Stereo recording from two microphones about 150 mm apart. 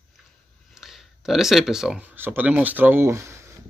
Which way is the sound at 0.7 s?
Centre (ahead or behind).